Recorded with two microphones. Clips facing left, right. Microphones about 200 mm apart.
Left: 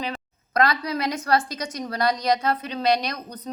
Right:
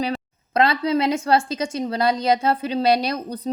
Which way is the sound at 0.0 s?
30° right (ahead or behind).